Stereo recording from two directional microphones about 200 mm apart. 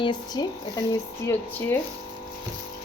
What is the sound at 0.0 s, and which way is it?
Speech, 20° left (ahead or behind).